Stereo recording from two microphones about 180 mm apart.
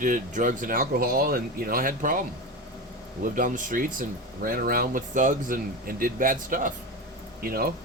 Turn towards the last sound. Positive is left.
turn(degrees=-55)  # may be behind; listen again after turning